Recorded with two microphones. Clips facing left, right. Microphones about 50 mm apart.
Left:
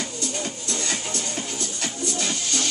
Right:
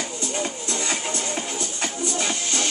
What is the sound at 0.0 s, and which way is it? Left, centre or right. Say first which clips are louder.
Music: right 2 dB; right.